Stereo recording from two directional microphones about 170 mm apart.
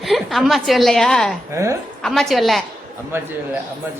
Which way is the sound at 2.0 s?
Centre (ahead or behind).